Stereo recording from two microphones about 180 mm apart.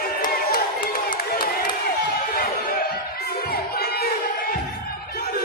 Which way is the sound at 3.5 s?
60° left (ahead or behind).